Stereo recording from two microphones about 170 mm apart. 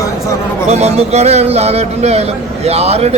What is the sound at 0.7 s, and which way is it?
A man's voice, 40° right (ahead or behind).